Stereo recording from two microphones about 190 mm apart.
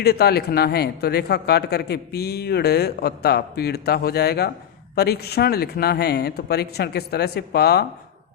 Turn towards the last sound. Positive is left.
turn(degrees=60)  # may be behind; listen again after turning